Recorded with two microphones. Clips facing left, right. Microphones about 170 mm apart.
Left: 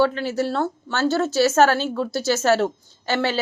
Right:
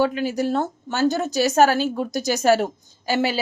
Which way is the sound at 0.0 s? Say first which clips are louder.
Even; 15° right (ahead or behind).